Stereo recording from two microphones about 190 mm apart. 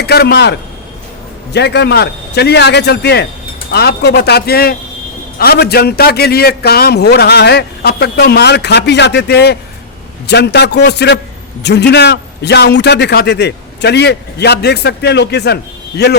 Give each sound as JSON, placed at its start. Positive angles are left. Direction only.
{"t": 0.0, "sound": "a man's voice", "side_deg": 60}